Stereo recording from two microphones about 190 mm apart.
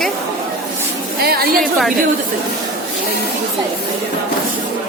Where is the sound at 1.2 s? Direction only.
55° right (ahead or behind).